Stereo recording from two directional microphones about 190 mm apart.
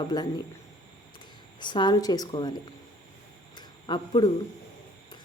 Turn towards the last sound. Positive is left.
turn(degrees=25)  # may be behind; listen again after turning